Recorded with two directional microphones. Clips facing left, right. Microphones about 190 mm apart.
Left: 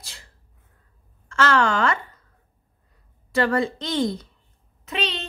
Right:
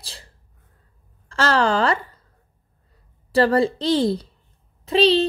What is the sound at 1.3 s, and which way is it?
Speech, 35° right (ahead or behind).